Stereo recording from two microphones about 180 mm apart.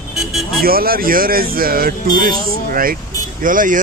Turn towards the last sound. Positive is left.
turn(degrees=-45)  # may be behind; listen again after turning